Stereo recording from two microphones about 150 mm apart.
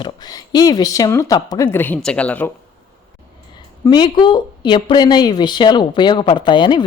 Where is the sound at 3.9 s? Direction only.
30° left (ahead or behind).